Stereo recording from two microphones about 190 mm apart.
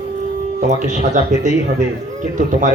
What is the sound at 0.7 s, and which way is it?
Speech, 40° right (ahead or behind).